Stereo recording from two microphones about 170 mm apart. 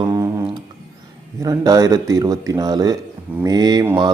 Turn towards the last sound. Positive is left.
turn(degrees=-25)  # may be behind; listen again after turning